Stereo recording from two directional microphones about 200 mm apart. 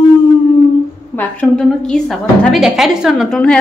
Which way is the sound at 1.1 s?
5° left (ahead or behind).